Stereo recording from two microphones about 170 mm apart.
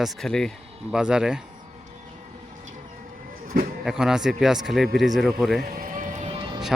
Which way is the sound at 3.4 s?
55° right (ahead or behind).